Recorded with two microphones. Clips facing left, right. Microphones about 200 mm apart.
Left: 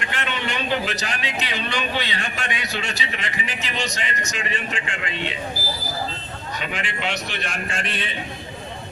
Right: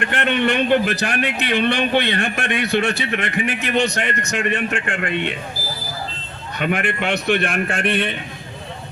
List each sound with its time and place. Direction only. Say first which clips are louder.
0.0 s a man's voice: right 9 dB; 55° right (ahead or behind)
6.6 s a man's voice: right 9 dB; 55° right (ahead or behind)